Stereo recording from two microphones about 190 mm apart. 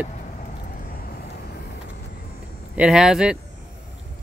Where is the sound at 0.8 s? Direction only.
50° left (ahead or behind).